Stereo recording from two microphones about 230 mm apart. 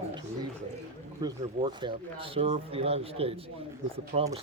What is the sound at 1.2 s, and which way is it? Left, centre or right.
Speech, centre.